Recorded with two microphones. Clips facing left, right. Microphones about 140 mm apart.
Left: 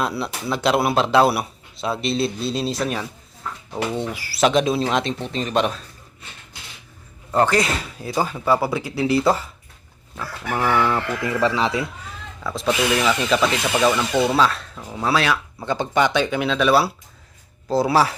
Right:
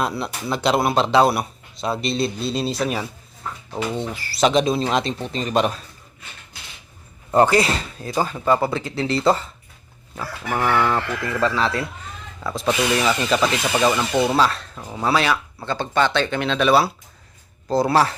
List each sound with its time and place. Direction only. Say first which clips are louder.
0.0 s speech: even; 5° left (ahead or behind)
3.9 s speech: left 1 dB; 10° left (ahead or behind)
7.3 s a man's voice: right 3 dB; 20° right (ahead or behind)
7.5 s speech: right 2 dB; centre (ahead or behind)
11.2 s speech: left 1 dB; 15° left (ahead or behind)
12.4 s speech: even; centre (ahead or behind)
15.6 s speech: left 1 dB; 15° left (ahead or behind)